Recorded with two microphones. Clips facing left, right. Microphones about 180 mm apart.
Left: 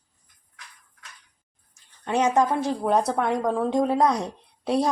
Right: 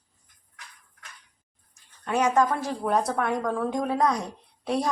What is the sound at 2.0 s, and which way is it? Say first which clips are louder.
Speech: left 1 dB; 25° left (ahead or behind).